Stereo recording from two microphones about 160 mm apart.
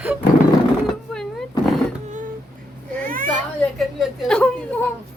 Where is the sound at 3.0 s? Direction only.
60° right (ahead or behind).